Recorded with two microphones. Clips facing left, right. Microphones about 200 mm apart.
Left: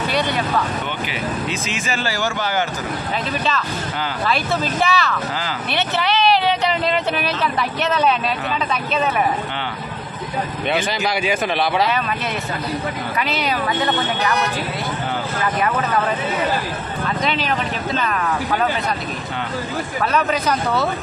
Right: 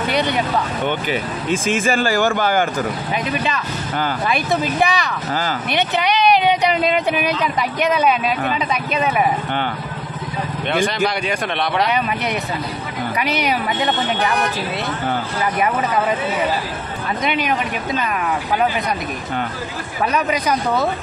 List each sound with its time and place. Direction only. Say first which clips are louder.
1.5 s speech: right 7 dB; 50° right (ahead or behind)
4.3 s speech: even; 15° right (ahead or behind)
13.2 s a woman's voice: right 2 dB; 20° right (ahead or behind)
17.2 s speech: right 2 dB; 15° right (ahead or behind)
20.1 s speech: right 1 dB; 15° right (ahead or behind)